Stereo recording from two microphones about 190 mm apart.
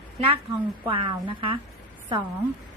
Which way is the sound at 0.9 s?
25° right (ahead or behind).